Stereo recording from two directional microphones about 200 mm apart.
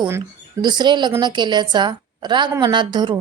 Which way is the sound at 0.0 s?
20° right (ahead or behind).